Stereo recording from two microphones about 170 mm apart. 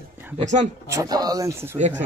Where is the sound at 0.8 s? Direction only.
20° right (ahead or behind).